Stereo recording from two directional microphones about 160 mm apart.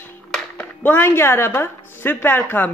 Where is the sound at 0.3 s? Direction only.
10° left (ahead or behind).